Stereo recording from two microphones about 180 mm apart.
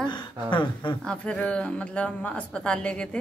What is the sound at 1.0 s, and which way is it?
A woman's voice, 5° left (ahead or behind).